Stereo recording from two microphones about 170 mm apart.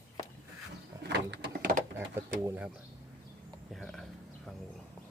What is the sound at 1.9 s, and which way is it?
Speech, 15° right (ahead or behind).